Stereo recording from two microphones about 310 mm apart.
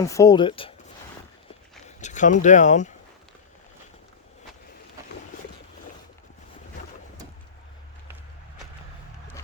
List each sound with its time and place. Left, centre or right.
0.0 s speech: centre
2.0 s speech: left